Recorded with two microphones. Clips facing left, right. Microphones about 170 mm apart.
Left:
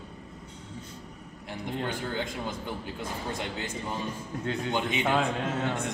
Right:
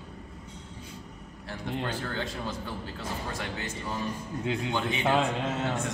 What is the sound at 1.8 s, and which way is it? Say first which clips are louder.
A man's voice: left 2 dB; 20° left (ahead or behind).